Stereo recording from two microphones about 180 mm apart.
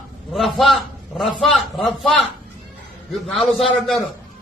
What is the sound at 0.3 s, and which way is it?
A man's voice, centre (ahead or behind).